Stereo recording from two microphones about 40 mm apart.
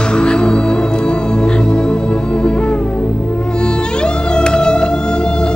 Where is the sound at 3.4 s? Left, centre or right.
Left.